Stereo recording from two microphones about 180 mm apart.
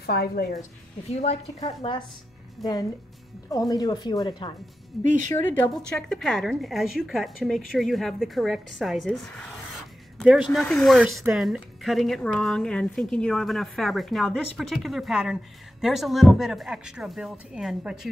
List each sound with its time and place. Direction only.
0.0 s a woman's voice: 60° left (ahead or behind)
0.5 s a woman's voice: 40° left (ahead or behind)
3.4 s speech: 20° left (ahead or behind)
5.0 s speech: 45° right (ahead or behind)
5.3 s a woman's voice: 5° left (ahead or behind)
10.5 s a woman's voice: 5° left (ahead or behind)